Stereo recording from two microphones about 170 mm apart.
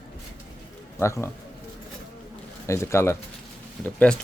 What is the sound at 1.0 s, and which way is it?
Speech, 15° left (ahead or behind).